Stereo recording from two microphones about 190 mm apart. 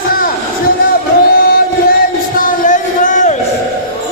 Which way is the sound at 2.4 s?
40° left (ahead or behind).